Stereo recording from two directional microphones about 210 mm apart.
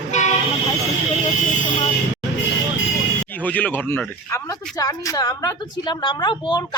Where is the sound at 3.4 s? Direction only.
5° left (ahead or behind).